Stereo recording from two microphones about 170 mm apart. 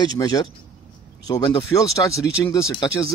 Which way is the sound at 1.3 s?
25° left (ahead or behind).